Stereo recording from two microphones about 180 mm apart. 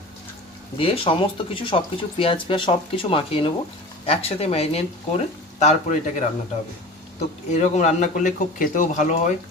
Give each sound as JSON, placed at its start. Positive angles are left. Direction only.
{"t": 0.8, "sound": "a man's voice", "side_deg": 30}